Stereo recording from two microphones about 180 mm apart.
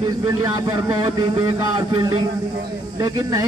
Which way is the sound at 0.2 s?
15° right (ahead or behind).